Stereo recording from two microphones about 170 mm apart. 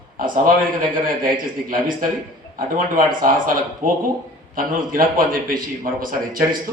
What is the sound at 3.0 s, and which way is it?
A man's voice, 55° right (ahead or behind).